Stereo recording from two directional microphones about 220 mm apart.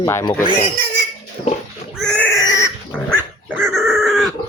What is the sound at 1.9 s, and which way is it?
Pig, 5° left (ahead or behind).